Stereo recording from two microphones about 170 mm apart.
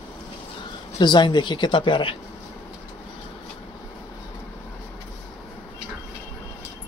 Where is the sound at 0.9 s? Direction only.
25° left (ahead or behind).